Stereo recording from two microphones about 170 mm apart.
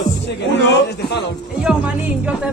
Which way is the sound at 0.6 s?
90° left.